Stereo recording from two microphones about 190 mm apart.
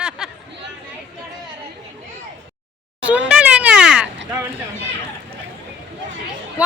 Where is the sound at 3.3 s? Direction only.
5° right (ahead or behind).